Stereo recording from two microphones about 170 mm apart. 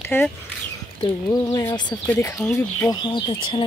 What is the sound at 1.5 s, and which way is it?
Speech, 25° left (ahead or behind).